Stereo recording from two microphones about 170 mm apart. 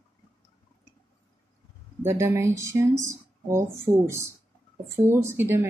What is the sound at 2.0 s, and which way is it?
Speech, 15° right (ahead or behind).